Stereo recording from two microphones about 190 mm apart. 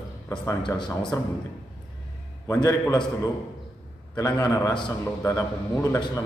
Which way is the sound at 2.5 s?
15° left (ahead or behind).